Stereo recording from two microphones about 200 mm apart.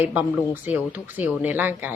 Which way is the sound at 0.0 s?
10° right (ahead or behind).